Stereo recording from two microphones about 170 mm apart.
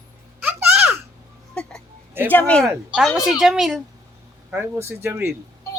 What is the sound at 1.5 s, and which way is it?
Hiccup, 5° left (ahead or behind).